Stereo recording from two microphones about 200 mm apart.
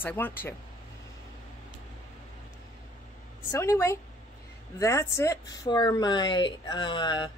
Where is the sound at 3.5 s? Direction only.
15° left (ahead or behind).